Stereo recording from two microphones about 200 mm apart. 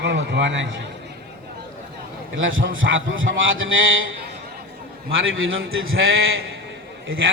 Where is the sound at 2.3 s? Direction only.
75° right (ahead or behind).